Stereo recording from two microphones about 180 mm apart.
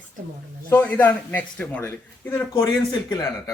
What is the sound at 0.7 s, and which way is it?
A man's voice, 10° left (ahead or behind).